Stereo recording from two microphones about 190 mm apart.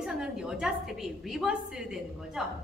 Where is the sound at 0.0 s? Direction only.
5° right (ahead or behind).